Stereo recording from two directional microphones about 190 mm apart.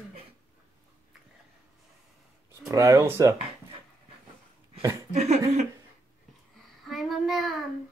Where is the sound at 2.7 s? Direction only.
15° right (ahead or behind).